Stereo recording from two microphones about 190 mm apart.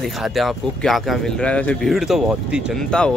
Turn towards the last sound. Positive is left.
turn(degrees=5)  # may be behind; listen again after turning